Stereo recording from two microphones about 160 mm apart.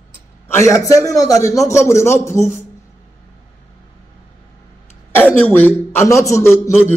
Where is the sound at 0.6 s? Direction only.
20° left (ahead or behind).